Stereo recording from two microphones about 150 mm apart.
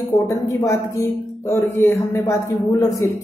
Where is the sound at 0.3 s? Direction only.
20° left (ahead or behind).